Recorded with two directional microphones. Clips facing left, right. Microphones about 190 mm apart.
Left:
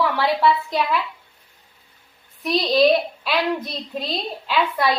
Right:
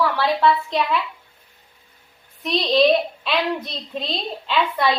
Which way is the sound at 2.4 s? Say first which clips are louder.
Even; 5° left (ahead or behind).